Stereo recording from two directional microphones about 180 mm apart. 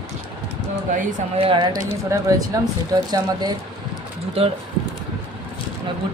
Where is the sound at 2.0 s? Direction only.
15° right (ahead or behind).